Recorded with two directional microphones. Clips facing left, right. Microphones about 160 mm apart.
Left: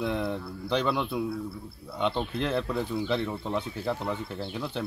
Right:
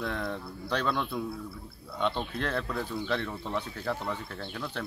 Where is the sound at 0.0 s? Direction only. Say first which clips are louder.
Left 4 dB; 5° left (ahead or behind).